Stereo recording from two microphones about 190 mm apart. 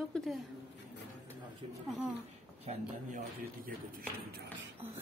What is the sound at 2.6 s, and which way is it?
Speech, 35° right (ahead or behind).